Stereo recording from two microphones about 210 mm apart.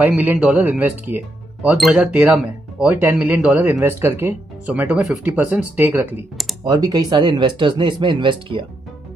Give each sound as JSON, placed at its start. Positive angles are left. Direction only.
{"t": 0.0, "sound": "speech", "side_deg": -10}